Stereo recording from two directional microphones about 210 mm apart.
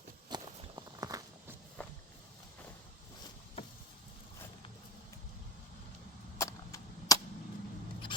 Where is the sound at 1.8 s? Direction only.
5° left (ahead or behind).